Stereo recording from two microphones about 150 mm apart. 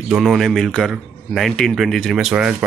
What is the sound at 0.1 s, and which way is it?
A man's voice, centre (ahead or behind).